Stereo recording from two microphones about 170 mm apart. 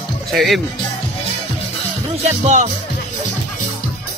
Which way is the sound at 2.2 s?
45° right (ahead or behind).